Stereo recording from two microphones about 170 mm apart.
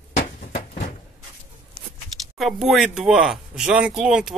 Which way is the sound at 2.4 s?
Centre (ahead or behind).